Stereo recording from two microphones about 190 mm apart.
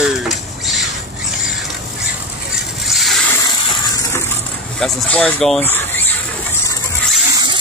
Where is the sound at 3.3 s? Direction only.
20° left (ahead or behind).